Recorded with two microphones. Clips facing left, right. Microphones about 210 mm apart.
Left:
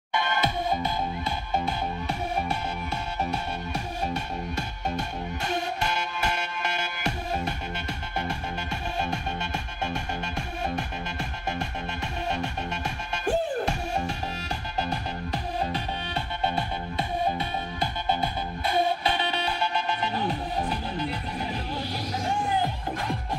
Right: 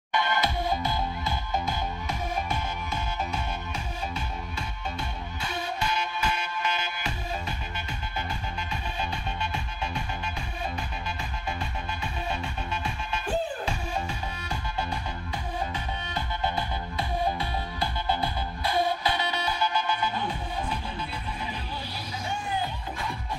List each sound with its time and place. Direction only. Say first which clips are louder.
5.9 s music: even; 70° left (ahead or behind)
8.2 s music: left 3 dB; 75° left (ahead or behind)
9.1 s music: left 2 dB; 50° left (ahead or behind)
12.4 s music: left 3 dB; 45° left (ahead or behind)
17.4 s music: left 1 dB; 25° left (ahead or behind)
22.6 s music: left 4 dB; 50° left (ahead or behind)